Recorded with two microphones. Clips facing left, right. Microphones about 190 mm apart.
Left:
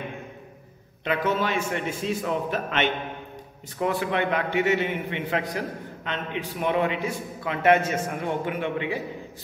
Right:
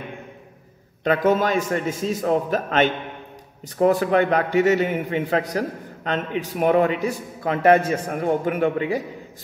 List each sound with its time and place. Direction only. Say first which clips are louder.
1.0 s a man's voice: right 6 dB; 45° right (ahead or behind)